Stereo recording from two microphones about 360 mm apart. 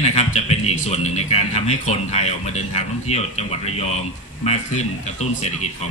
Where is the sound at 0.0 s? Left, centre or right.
Centre.